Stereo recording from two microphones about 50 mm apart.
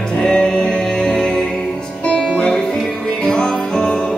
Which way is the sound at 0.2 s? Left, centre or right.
Centre.